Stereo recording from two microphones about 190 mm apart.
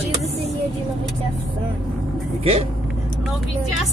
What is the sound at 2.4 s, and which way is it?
Speech, 30° right (ahead or behind).